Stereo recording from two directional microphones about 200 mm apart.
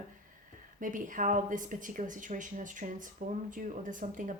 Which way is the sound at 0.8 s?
40° right (ahead or behind).